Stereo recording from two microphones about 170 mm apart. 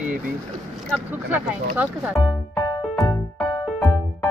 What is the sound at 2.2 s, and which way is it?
Music, 30° left (ahead or behind).